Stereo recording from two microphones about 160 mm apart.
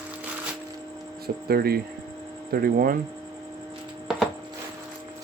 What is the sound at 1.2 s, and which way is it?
Speech, 75° right (ahead or behind).